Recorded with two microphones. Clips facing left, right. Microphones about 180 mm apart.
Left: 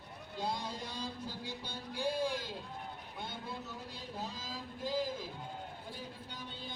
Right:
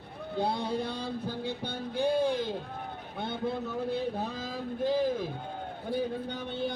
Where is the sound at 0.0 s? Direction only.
55° right (ahead or behind).